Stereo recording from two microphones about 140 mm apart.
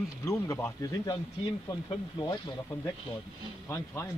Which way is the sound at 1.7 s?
35° left (ahead or behind).